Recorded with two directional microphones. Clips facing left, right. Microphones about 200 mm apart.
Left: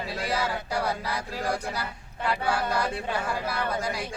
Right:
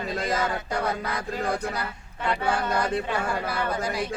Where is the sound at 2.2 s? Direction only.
5° left (ahead or behind).